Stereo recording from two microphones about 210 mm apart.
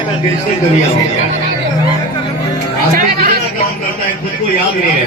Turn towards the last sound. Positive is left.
turn(degrees=-45)  # may be behind; listen again after turning